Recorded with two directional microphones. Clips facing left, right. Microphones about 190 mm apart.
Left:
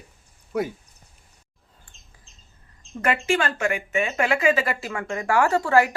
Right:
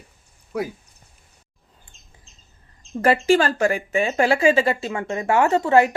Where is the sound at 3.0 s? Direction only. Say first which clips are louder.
Right 6 dB; 35° right (ahead or behind).